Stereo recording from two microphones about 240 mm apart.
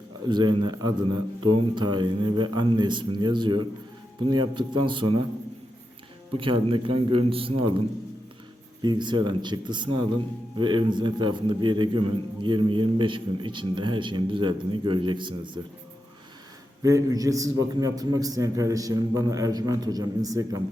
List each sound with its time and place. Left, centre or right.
0.3 s a man's voice: centre
6.3 s a man's voice: right
8.8 s a man's voice: centre
16.8 s a man's voice: centre